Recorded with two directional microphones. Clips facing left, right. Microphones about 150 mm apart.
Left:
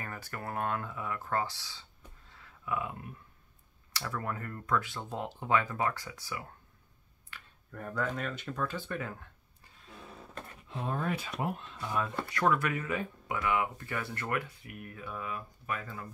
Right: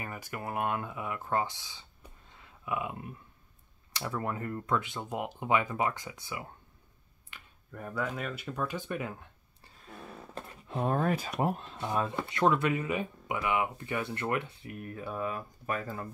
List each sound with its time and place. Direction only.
0.0 s speech: 15° right (ahead or behind)
7.3 s a sound: 20° right (ahead or behind)
7.7 s speech: 5° right (ahead or behind)
10.7 s speech: 50° right (ahead or behind)